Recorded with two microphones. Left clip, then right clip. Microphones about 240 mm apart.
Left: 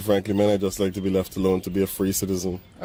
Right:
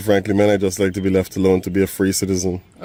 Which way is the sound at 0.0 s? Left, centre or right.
Right.